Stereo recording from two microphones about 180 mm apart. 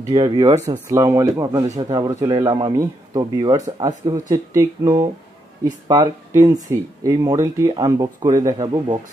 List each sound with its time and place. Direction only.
0.1 s speech: 25° right (ahead or behind)